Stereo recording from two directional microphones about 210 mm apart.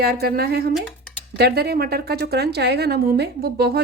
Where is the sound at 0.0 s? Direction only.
45° right (ahead or behind).